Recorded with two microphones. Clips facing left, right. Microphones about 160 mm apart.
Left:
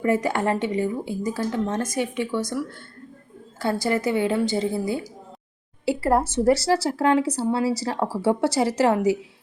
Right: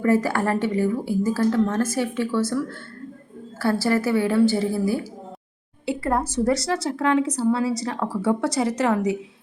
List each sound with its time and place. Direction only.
0.0 s speech: 20° left (ahead or behind)